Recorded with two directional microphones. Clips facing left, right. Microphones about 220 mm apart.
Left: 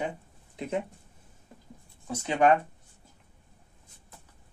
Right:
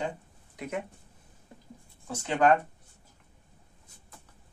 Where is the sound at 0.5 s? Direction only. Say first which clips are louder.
Left 3 dB; 25° left (ahead or behind).